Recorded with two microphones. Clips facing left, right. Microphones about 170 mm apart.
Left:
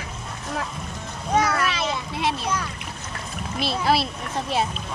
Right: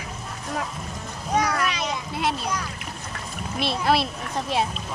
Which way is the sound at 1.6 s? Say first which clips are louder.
Left 1 dB; centre (ahead or behind).